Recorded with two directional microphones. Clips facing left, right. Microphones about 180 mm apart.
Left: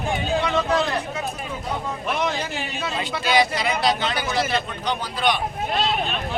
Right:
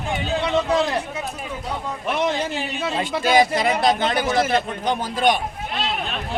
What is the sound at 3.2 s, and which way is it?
A man's voice, 45° right (ahead or behind).